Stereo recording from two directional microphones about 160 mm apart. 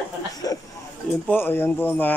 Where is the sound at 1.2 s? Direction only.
10° left (ahead or behind).